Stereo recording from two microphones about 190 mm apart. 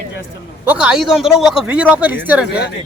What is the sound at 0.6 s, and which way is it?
Speech, 5° right (ahead or behind).